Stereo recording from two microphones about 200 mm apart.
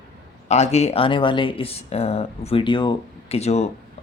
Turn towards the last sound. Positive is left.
turn(degrees=35)  # may be behind; listen again after turning